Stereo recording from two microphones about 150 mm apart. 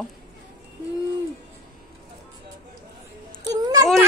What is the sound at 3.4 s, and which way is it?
Music, 25° right (ahead or behind).